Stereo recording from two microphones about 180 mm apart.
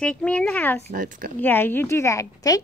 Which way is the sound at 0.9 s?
50° right (ahead or behind).